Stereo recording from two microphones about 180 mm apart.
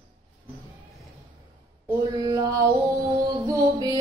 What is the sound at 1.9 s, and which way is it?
Mantra, 20° right (ahead or behind).